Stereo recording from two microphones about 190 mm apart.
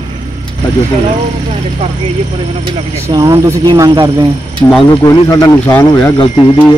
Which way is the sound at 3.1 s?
20° right (ahead or behind).